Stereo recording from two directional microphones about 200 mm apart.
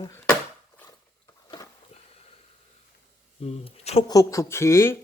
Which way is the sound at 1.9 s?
35° left (ahead or behind).